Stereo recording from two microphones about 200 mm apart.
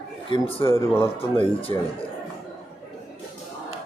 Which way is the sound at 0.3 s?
25° left (ahead or behind).